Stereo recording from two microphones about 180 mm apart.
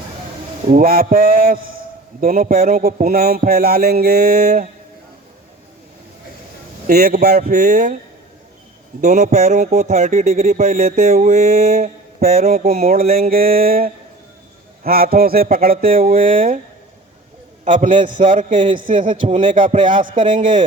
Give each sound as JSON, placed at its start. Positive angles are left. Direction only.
{"t": 0.7, "sound": "speech", "side_deg": -50}
{"t": 2.2, "sound": "a sound", "side_deg": -50}
{"t": 6.8, "sound": "a man's voice", "side_deg": -60}
{"t": 9.0, "sound": "speech", "side_deg": -40}
{"t": 17.7, "sound": "speech", "side_deg": -45}